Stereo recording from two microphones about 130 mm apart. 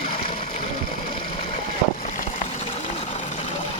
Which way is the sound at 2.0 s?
75° left (ahead or behind).